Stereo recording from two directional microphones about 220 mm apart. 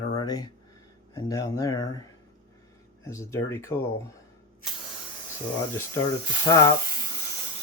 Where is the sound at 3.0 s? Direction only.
15° left (ahead or behind).